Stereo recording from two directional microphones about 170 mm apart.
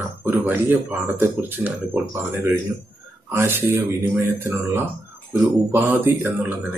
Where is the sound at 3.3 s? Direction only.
15° right (ahead or behind).